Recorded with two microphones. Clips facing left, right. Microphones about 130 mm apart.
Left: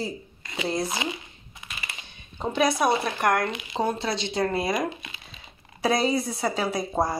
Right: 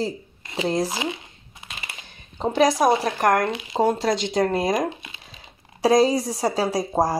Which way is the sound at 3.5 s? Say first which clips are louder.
Right 6 dB; 30° right (ahead or behind).